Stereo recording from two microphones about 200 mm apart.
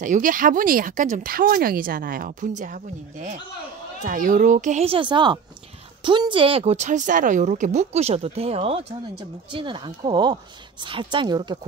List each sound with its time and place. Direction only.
0.0 s a woman's voice: 40° right (ahead or behind); by 11.5 s 20° right (ahead or behind)